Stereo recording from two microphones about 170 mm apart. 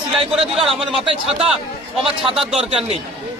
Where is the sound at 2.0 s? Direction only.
Centre (ahead or behind).